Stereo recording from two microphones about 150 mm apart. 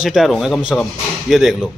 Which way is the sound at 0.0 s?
Centre (ahead or behind).